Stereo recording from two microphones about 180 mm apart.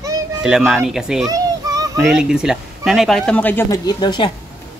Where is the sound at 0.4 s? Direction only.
Centre (ahead or behind).